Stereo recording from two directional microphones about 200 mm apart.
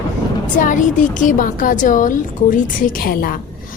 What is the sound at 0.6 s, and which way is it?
A woman's voice, 40° left (ahead or behind).